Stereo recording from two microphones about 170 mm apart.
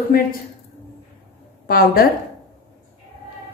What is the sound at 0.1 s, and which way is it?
Speech, 60° left (ahead or behind).